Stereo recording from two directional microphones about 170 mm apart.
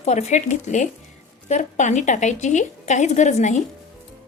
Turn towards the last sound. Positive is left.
turn(degrees=45)  # may be behind; listen again after turning